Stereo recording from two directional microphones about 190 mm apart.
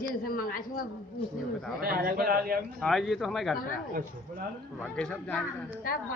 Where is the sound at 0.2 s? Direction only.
50° left (ahead or behind).